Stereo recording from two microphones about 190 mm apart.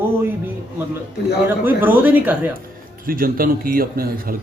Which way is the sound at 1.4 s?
10° right (ahead or behind).